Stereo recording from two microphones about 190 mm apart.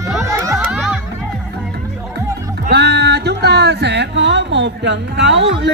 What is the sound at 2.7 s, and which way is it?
Music, 60° right (ahead or behind).